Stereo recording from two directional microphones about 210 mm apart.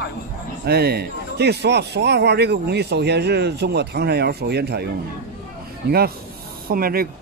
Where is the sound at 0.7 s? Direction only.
50° right (ahead or behind).